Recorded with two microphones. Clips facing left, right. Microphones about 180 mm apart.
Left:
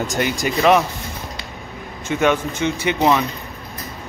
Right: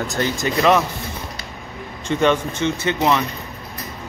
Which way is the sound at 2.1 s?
10° left (ahead or behind).